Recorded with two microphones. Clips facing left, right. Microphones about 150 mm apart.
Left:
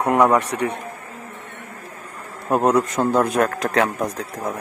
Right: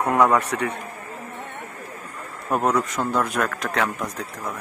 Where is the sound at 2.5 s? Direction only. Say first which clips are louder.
Left 4 dB; 30° left (ahead or behind).